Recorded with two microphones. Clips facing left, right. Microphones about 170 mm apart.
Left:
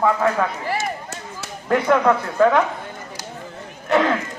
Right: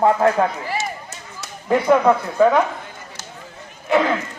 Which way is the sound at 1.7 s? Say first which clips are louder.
Right 2 dB; 15° right (ahead or behind).